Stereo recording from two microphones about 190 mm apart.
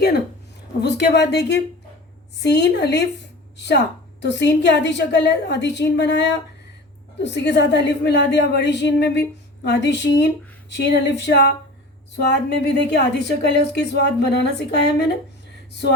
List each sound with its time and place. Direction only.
0.8 s a woman's voice: 60° left (ahead or behind)